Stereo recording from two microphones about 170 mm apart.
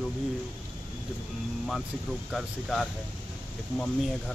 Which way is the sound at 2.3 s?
Centre (ahead or behind).